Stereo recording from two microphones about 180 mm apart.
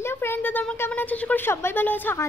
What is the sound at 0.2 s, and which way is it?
Speech, 10° left (ahead or behind).